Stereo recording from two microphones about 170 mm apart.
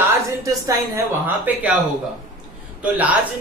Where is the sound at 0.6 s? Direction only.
20° right (ahead or behind).